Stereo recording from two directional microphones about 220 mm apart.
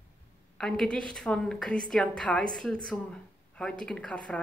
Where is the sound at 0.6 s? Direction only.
Centre (ahead or behind).